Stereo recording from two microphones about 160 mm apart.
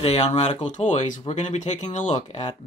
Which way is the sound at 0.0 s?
40° left (ahead or behind).